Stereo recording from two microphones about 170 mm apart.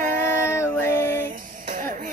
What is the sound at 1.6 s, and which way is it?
Music, 50° right (ahead or behind).